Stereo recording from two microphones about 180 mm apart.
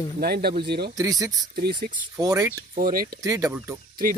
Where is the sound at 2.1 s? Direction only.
15° right (ahead or behind).